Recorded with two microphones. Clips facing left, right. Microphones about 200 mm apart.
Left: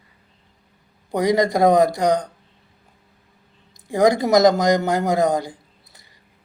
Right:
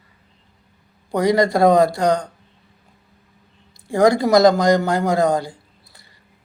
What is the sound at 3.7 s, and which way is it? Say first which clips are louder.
Speech: right 1 dB; 20° left (ahead or behind).